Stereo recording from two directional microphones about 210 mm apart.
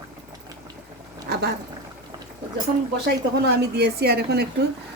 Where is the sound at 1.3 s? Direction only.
50° right (ahead or behind).